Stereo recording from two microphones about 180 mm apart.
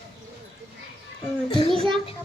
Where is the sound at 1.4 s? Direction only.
30° left (ahead or behind).